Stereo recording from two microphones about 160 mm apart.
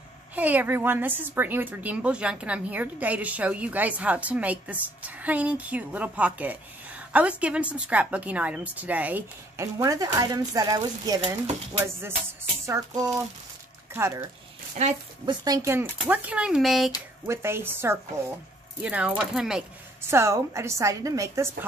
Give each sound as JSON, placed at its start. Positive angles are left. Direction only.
{"t": 0.4, "sound": "speech", "side_deg": -10}
{"t": 12.6, "sound": "speech", "side_deg": -20}
{"t": 14.8, "sound": "speech", "side_deg": -45}
{"t": 15.2, "sound": "speech", "side_deg": -25}
{"t": 17.3, "sound": "speech", "side_deg": -15}
{"t": 20.0, "sound": "speech", "side_deg": -15}